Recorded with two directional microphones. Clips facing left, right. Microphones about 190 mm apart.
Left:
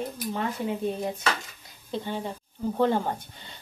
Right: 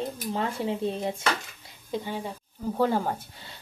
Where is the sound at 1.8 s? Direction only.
10° right (ahead or behind).